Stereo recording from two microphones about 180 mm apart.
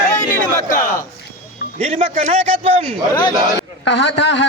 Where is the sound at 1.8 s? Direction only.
40° right (ahead or behind).